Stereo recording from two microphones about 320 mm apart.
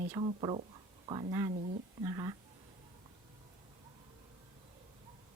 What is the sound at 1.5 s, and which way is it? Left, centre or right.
Speech, right.